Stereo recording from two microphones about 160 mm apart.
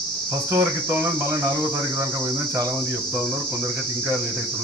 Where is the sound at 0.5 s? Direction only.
15° right (ahead or behind).